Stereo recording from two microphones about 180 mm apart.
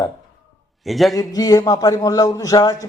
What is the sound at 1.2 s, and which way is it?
A man's voice, 20° left (ahead or behind).